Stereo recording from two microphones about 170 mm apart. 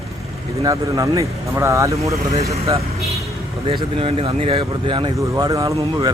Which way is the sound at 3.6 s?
35° right (ahead or behind).